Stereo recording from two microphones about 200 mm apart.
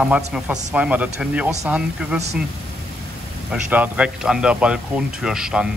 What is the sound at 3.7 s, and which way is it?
Speech, 5° right (ahead or behind).